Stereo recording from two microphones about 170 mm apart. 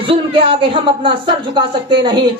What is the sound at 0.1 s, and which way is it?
Speech, 30° right (ahead or behind).